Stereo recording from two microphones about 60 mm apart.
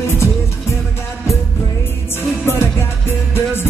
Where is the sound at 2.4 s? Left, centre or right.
Left.